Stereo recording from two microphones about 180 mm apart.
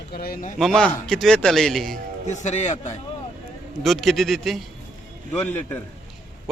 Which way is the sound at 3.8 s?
Centre (ahead or behind).